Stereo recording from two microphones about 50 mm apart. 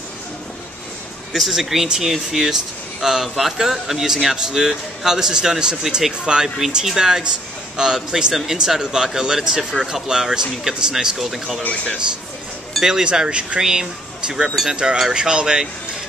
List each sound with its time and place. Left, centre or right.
1.3 s speech: centre
12.8 s speech: centre